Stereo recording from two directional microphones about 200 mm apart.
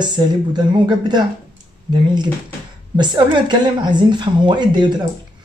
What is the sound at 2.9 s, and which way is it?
Speech, 25° right (ahead or behind).